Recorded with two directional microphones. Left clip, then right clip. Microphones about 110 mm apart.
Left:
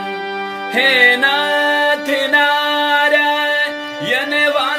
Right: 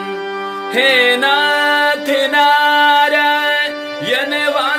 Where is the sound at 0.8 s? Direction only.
30° right (ahead or behind).